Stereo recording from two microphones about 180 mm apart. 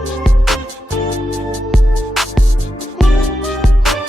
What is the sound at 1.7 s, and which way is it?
Music, centre (ahead or behind).